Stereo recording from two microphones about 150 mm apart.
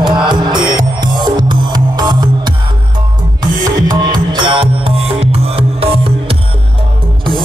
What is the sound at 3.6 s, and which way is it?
Music, 30° right (ahead or behind).